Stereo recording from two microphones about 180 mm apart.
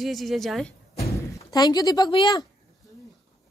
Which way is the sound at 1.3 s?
20° left (ahead or behind).